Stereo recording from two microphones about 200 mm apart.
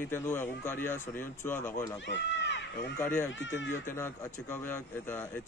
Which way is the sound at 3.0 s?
10° left (ahead or behind).